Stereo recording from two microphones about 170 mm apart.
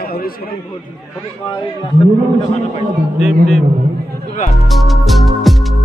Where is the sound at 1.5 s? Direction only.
25° left (ahead or behind).